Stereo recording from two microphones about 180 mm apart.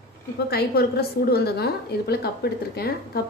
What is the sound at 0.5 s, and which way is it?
A woman's voice, 60° left (ahead or behind).